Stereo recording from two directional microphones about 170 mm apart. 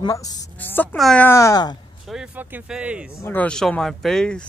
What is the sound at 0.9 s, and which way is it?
Speech, 5° left (ahead or behind).